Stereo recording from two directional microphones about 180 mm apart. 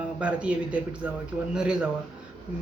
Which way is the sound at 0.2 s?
5° right (ahead or behind).